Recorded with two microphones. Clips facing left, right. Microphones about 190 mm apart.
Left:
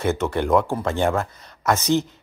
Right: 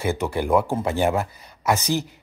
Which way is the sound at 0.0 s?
10° right (ahead or behind).